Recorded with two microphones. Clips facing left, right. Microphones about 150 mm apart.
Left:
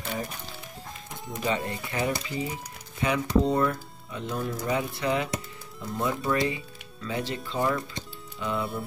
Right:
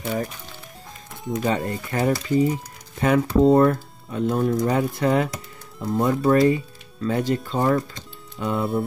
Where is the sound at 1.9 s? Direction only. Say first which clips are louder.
Right 9 dB; 45° right (ahead or behind).